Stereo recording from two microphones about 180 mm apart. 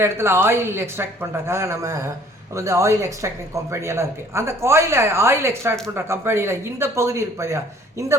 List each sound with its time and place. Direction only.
0.0 s speech: 15° right (ahead or behind)